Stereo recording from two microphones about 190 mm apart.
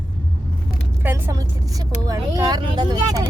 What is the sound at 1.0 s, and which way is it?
A woman's voice, 15° right (ahead or behind).